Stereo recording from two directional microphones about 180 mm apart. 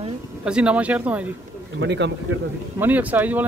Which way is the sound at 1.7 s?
80° right.